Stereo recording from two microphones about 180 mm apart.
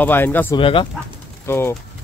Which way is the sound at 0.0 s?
10° left (ahead or behind).